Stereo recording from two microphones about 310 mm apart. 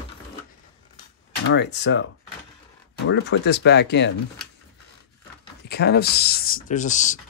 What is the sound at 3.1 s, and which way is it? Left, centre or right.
Speech, left.